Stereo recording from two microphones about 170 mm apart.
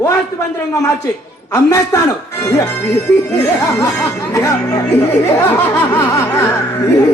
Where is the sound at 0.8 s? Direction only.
20° left (ahead or behind).